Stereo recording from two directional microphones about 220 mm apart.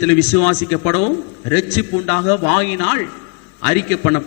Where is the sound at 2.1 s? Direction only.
20° left (ahead or behind).